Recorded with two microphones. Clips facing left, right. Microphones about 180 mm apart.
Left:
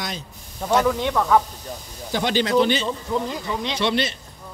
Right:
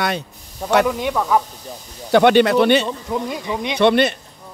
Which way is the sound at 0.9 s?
10° right (ahead or behind).